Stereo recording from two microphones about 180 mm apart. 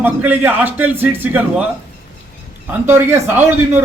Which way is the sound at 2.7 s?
15° right (ahead or behind).